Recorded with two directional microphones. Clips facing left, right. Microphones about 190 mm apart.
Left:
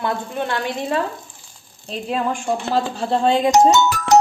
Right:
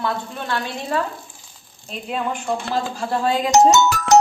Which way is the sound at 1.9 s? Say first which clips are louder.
Left 3 dB; 40° left (ahead or behind).